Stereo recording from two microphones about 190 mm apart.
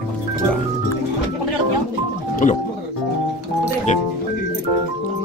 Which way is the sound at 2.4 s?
40° left (ahead or behind).